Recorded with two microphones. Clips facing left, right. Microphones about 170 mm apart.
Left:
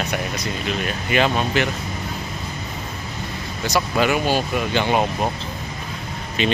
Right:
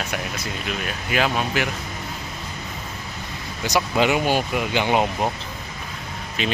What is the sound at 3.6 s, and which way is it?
Speech, 20° right (ahead or behind).